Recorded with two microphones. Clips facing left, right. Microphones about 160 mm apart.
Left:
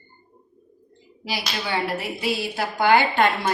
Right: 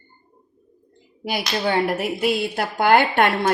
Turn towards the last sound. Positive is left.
turn(degrees=-60)  # may be behind; listen again after turning